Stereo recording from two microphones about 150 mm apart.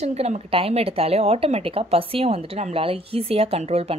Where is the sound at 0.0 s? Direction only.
45° right (ahead or behind).